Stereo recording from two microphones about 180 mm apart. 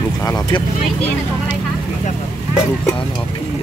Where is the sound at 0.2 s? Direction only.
20° left (ahead or behind).